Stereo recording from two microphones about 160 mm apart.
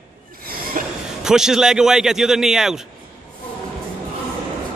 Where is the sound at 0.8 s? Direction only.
55° right (ahead or behind).